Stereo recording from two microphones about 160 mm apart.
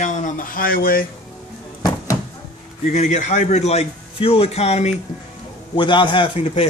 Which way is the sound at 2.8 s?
50° left (ahead or behind).